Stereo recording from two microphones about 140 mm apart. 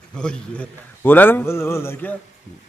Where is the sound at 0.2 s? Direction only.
5° left (ahead or behind).